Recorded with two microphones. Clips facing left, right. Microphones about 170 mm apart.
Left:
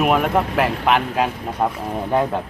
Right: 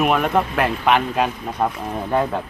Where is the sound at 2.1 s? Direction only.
15° left (ahead or behind).